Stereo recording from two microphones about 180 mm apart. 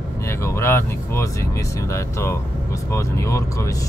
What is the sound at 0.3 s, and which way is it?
Speech, 15° left (ahead or behind).